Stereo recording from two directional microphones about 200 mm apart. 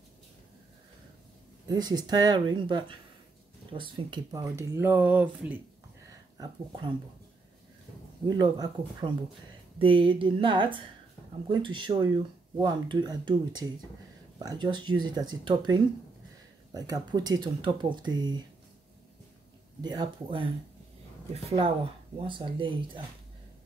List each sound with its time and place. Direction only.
1.7 s speech: 20° right (ahead or behind)
6.3 s speech: 20° right (ahead or behind)
8.4 s speech: 20° right (ahead or behind)
19.8 s speech: 20° right (ahead or behind)